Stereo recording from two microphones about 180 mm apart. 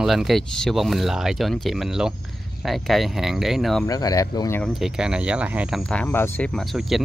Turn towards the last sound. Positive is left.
turn(degrees=0)  # may be behind; listen again after turning